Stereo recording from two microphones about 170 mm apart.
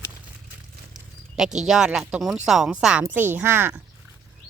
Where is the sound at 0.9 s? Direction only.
5° right (ahead or behind).